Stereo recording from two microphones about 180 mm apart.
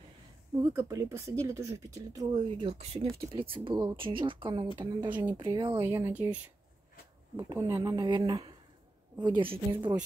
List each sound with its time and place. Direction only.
0.6 s speech: 15° right (ahead or behind)
7.3 s speech: 20° right (ahead or behind)